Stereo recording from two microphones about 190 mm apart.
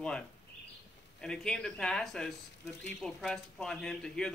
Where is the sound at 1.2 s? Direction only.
5° left (ahead or behind).